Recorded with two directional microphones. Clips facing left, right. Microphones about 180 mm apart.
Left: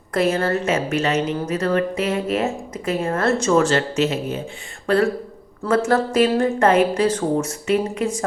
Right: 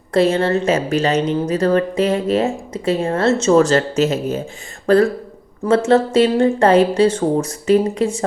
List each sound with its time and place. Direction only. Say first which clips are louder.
0.1 s a woman's voice: right 4 dB; 30° right (ahead or behind)
3.6 s a woman's voice: right 4 dB; 40° right (ahead or behind)
5.6 s speech: right 4 dB; 25° right (ahead or behind)